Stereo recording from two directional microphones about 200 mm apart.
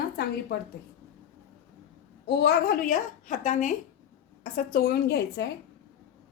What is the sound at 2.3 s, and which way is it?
A woman's voice, 55° left (ahead or behind).